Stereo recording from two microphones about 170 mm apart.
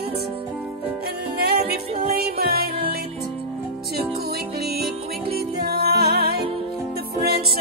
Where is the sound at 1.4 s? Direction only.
70° right (ahead or behind).